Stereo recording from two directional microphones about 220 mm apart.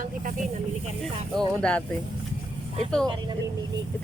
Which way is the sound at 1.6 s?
5° left (ahead or behind).